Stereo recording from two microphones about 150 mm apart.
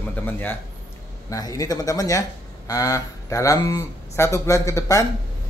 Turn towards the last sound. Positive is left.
turn(degrees=20)  # may be behind; listen again after turning